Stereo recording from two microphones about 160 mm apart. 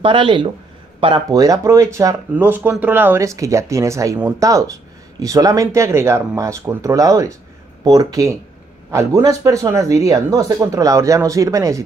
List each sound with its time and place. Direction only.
0.0 s speech: 30° right (ahead or behind)